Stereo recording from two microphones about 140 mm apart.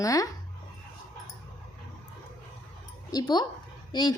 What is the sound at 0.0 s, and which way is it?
Speech, 25° left (ahead or behind).